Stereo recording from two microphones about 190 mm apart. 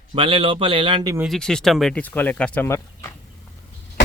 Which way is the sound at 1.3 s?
5° left (ahead or behind).